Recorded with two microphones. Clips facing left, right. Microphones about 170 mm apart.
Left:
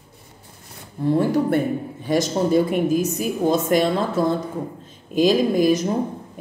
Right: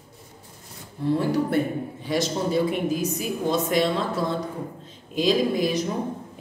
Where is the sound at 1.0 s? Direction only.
45° left (ahead or behind).